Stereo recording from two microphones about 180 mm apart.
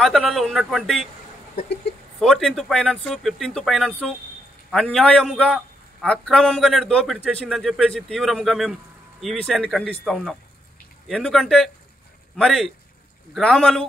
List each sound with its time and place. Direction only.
0.0 s a man's voice: centre (ahead or behind)
2.1 s a man's voice: centre (ahead or behind)